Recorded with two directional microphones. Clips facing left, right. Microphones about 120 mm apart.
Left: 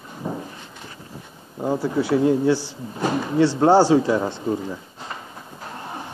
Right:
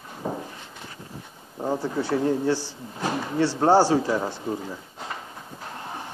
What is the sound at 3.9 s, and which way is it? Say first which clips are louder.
Speech: left 5 dB; 15° left (ahead or behind).